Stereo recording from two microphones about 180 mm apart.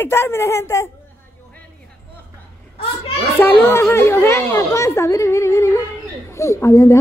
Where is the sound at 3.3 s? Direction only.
10° left (ahead or behind).